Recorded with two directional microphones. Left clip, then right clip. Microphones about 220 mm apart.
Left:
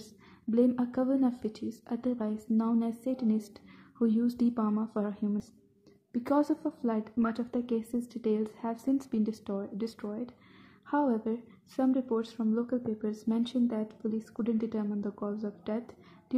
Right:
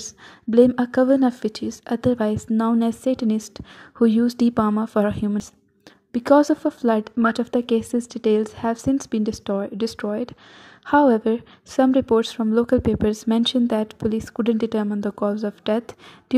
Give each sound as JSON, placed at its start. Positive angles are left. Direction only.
{"t": 0.0, "sound": "a woman's voice", "side_deg": -30}